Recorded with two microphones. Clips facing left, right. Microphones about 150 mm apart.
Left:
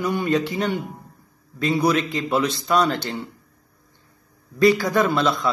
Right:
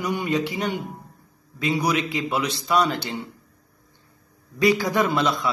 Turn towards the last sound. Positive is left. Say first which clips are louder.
# left 2 dB
turn(degrees=-15)  # may be behind; listen again after turning